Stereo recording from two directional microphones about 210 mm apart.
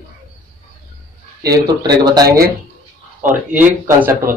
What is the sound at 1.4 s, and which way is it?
Speech, 15° right (ahead or behind).